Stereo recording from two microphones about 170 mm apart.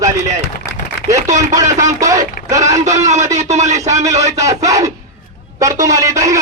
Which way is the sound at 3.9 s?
20° right (ahead or behind).